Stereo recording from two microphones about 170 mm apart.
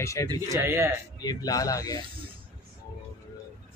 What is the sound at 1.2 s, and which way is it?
Speech, 20° left (ahead or behind).